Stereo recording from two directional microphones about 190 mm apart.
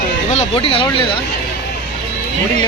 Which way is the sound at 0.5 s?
30° left (ahead or behind).